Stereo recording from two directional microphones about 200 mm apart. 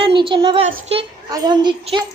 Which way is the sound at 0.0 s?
25° right (ahead or behind).